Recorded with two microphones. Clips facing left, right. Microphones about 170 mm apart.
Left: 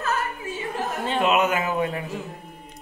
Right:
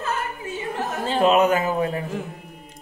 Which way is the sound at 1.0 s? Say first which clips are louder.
Right 4 dB; 35° right (ahead or behind).